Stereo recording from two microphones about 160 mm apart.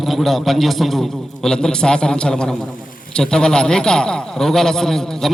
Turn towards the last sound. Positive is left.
turn(degrees=5)  # may be behind; listen again after turning